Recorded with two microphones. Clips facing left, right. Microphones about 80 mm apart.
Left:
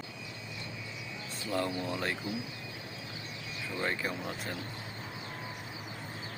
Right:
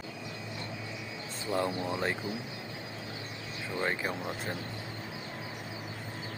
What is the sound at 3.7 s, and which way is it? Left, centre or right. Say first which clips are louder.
Speech: right 2 dB; right.